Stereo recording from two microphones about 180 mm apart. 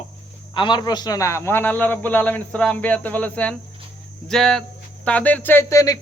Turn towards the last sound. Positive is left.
turn(degrees=15)  # may be behind; listen again after turning